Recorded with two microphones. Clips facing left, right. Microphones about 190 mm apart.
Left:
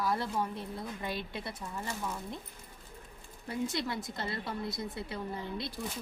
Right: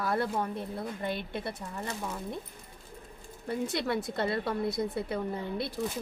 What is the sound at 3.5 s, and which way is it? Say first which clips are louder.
A woman's voice: right 4 dB; 60° right (ahead or behind).